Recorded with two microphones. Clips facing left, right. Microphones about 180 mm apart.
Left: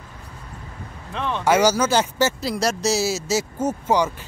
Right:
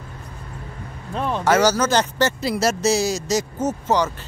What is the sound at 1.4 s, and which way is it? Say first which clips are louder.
Speech: even; 10° left (ahead or behind).